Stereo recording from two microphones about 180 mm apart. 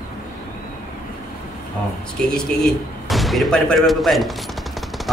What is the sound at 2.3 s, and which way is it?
Speech, centre (ahead or behind).